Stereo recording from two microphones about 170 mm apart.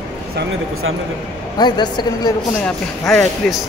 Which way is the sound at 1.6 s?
25° left (ahead or behind).